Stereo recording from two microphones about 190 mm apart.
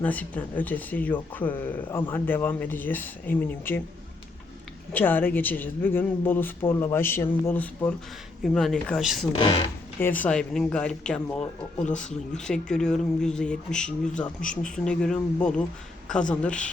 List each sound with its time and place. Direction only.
0.0 s speech: 10° left (ahead or behind)
4.9 s speech: 10° left (ahead or behind)
9.3 s speech: 30° left (ahead or behind)
10.0 s speech: 10° left (ahead or behind)